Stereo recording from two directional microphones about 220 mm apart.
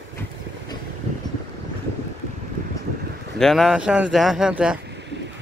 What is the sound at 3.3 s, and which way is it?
Speech, centre (ahead or behind).